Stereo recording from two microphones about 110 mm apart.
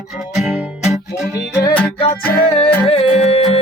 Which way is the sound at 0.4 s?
5° right (ahead or behind).